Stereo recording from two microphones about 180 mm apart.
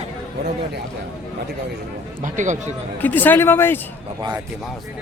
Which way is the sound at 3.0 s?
10° left (ahead or behind).